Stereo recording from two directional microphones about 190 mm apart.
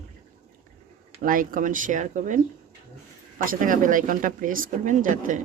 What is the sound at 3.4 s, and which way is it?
Speech, 45° right (ahead or behind).